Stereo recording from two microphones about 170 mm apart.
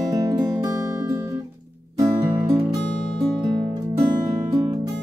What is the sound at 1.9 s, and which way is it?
Music, 20° right (ahead or behind).